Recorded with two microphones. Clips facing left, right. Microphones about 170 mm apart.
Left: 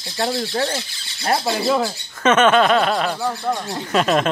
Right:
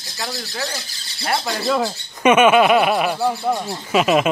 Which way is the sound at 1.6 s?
5° left (ahead or behind).